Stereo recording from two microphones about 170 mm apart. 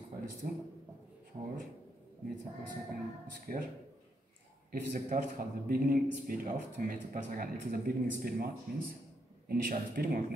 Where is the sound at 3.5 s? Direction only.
60° right (ahead or behind).